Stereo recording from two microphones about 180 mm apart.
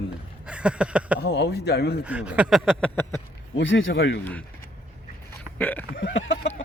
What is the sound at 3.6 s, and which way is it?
Speech, 90° left.